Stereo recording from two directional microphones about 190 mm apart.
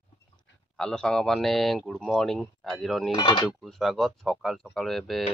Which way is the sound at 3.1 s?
25° left (ahead or behind).